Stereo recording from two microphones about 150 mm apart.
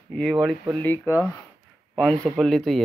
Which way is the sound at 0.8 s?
15° left (ahead or behind).